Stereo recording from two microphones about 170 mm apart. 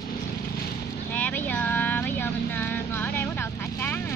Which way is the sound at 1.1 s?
10° left (ahead or behind).